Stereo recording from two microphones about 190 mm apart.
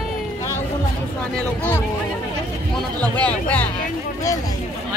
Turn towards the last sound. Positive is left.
turn(degrees=5)  # may be behind; listen again after turning